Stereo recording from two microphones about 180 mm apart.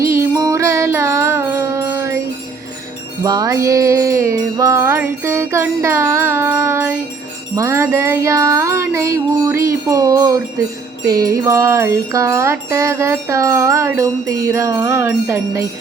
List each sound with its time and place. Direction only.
0.0 s music: 15° right (ahead or behind)
3.2 s music: 20° right (ahead or behind)